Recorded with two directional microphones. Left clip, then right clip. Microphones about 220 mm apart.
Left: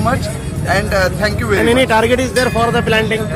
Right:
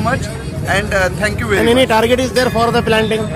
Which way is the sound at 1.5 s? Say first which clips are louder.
Right 1 dB; 20° right (ahead or behind).